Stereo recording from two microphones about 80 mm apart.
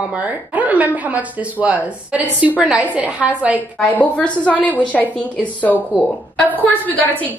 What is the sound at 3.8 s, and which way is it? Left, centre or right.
A woman's voice, centre.